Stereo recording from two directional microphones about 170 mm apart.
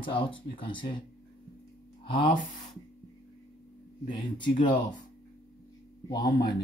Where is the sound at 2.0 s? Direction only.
30° left (ahead or behind).